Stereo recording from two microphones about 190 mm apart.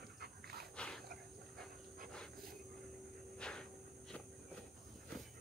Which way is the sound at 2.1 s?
5° left (ahead or behind).